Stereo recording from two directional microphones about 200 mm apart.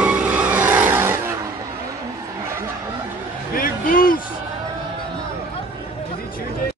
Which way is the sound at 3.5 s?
45° left (ahead or behind).